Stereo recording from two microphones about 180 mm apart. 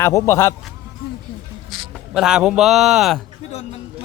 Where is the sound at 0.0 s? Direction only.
15° left (ahead or behind).